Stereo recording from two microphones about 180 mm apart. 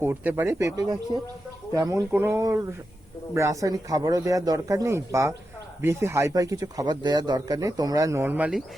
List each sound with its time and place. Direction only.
0.0 s speech: 10° right (ahead or behind)